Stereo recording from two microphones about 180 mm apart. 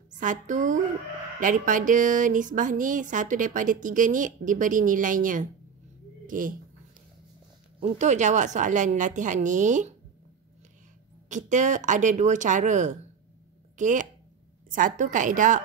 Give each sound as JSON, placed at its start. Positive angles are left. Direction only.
{"t": 0.1, "sound": "speech", "side_deg": -45}
{"t": 7.8, "sound": "speech", "side_deg": -40}
{"t": 11.2, "sound": "speech", "side_deg": -45}